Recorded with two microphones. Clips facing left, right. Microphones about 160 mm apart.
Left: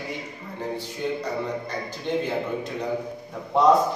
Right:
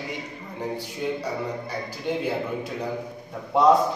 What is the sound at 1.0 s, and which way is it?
Speech, 5° right (ahead or behind).